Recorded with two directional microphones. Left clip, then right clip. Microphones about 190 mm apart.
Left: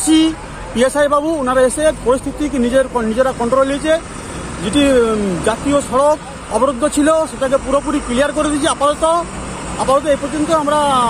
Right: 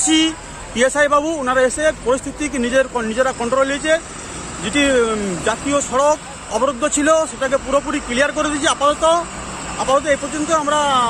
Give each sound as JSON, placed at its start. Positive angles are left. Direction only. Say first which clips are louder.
{"t": 0.0, "sound": "speech", "louder": "left 3 dB", "side_deg": 30}
{"t": 1.0, "sound": "speech", "louder": "left 1 dB", "side_deg": 0}